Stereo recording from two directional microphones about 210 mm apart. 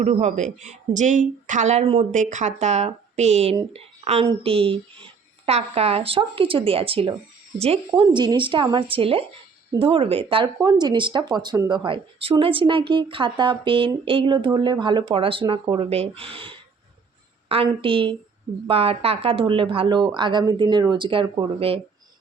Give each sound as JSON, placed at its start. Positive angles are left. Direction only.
{"t": 0.0, "sound": "speech", "side_deg": -35}